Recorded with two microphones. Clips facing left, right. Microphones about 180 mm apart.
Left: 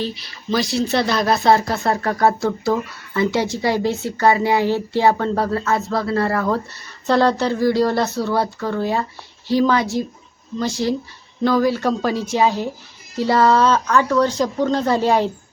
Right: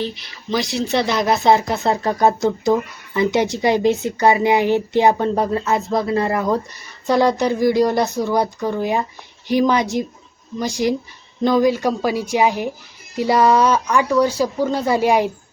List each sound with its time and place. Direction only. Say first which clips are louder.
0.0 s speech: even; 20° right (ahead or behind)